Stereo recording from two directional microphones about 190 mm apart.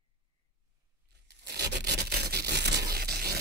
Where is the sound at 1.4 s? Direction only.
60° right (ahead or behind).